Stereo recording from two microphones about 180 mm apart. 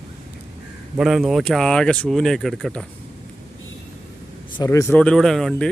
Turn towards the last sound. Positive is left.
turn(degrees=5)  # may be behind; listen again after turning